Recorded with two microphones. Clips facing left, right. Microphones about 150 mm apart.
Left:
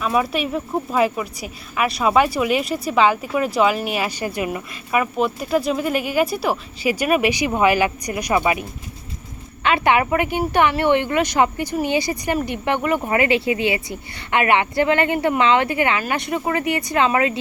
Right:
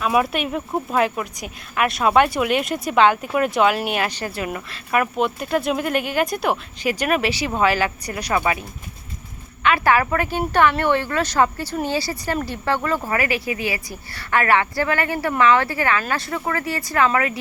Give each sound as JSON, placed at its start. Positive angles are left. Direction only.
{"t": 0.0, "sound": "speech", "side_deg": 0}
{"t": 9.6, "sound": "speech", "side_deg": 25}